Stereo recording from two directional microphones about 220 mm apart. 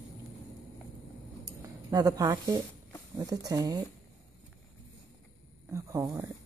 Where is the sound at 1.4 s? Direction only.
15° right (ahead or behind).